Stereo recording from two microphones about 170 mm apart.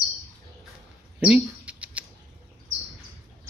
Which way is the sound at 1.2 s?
5° right (ahead or behind).